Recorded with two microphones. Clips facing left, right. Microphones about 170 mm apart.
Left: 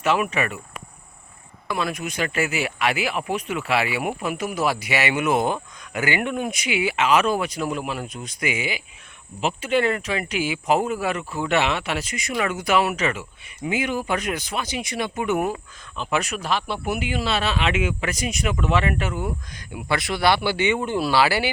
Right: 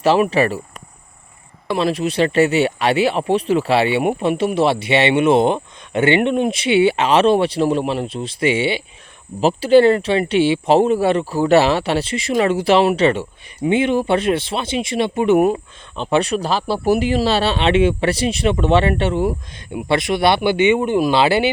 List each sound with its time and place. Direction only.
0.0 s speech: 35° right (ahead or behind)
1.6 s speech: 30° right (ahead or behind)